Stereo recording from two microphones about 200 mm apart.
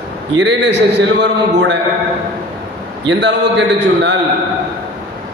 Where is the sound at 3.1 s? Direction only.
60° right (ahead or behind).